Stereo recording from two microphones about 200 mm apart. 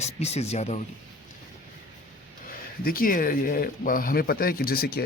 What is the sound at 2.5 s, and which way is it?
Speech, 45° left (ahead or behind).